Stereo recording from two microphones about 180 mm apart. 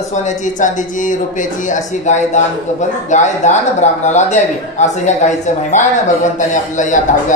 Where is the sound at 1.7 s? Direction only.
40° left (ahead or behind).